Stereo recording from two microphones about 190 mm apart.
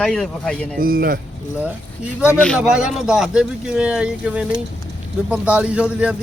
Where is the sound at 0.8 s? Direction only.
50° right (ahead or behind).